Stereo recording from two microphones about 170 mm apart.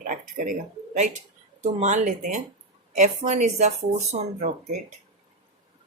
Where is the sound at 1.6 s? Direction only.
45° right (ahead or behind).